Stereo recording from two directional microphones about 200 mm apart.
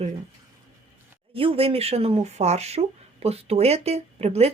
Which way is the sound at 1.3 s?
30° right (ahead or behind).